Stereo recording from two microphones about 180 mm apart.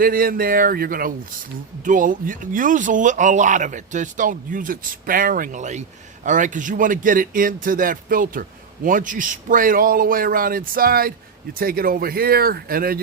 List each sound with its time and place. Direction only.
0.0 s a man's voice: 55° right (ahead or behind)